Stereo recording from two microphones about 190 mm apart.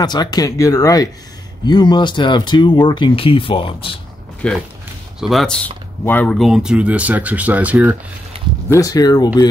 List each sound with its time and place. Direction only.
0.0 s speech: 20° left (ahead or behind)
4.4 s speech: 5° left (ahead or behind)
8.6 s speech: 15° left (ahead or behind)